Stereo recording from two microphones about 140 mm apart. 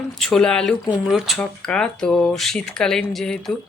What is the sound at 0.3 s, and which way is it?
Speech, 5° left (ahead or behind).